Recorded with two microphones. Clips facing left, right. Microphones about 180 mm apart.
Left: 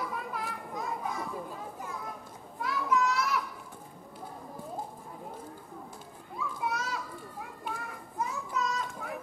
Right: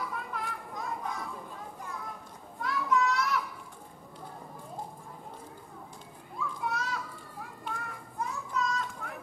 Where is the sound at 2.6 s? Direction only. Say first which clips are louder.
Even; 5° left (ahead or behind).